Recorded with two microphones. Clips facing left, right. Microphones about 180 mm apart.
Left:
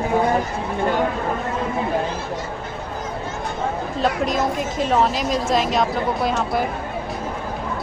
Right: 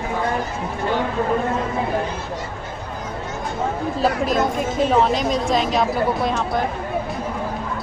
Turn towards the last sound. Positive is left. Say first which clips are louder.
# even
turn(degrees=0)  # may be behind; listen again after turning